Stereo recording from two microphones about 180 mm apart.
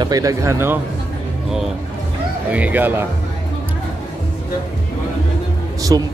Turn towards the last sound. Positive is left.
turn(degrees=-25)  # may be behind; listen again after turning